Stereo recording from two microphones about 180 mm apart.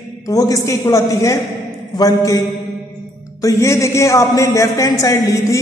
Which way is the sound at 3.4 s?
15° left (ahead or behind).